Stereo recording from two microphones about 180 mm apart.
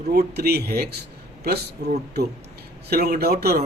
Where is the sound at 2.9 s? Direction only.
55° right (ahead or behind).